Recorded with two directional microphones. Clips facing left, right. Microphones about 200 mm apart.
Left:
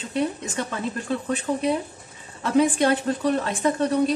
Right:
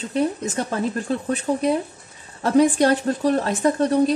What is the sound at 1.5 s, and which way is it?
A woman's voice, 35° right (ahead or behind).